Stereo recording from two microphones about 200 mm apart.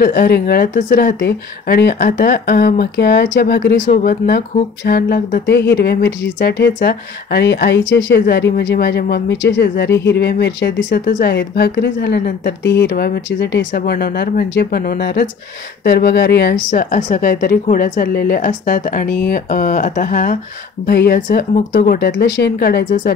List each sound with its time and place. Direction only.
0.0 s a woman's voice: 45° left (ahead or behind)
3.8 s a woman's voice: 40° left (ahead or behind); by 10.9 s 60° left (ahead or behind)
10.9 s speech: 40° left (ahead or behind)
11.3 s a woman's voice: 55° left (ahead or behind)
12.6 s a woman's voice: 60° left (ahead or behind); by 23.1 s 45° left (ahead or behind)